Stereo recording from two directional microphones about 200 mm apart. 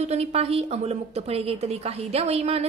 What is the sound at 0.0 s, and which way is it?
A woman's voice, 35° right (ahead or behind).